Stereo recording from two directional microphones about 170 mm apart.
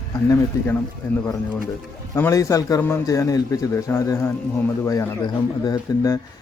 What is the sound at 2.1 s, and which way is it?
Speech, 15° left (ahead or behind).